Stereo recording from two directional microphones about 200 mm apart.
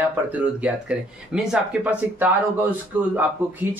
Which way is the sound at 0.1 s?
5° right (ahead or behind).